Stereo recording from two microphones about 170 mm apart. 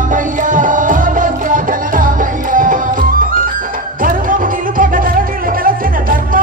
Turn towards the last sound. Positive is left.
turn(degrees=-55)  # may be behind; listen again after turning